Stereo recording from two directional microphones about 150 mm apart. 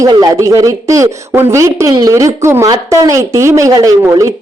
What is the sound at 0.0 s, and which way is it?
Speech, 25° right (ahead or behind).